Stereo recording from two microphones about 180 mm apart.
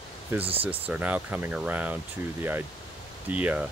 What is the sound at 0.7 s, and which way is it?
Speech, 10° right (ahead or behind).